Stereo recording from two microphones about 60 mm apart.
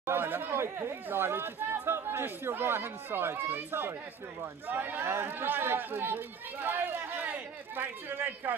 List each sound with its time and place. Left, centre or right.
0.0 s speech: right